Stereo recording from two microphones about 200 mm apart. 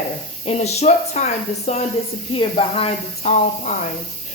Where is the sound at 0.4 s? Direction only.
35° left (ahead or behind).